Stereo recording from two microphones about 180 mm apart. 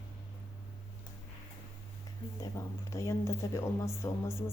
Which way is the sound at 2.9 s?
15° left (ahead or behind).